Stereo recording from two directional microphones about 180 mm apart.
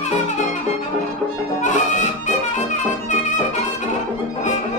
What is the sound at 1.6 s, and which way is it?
Music, 45° left (ahead or behind).